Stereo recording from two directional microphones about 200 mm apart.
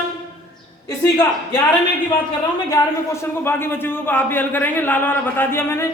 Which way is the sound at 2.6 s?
15° left (ahead or behind).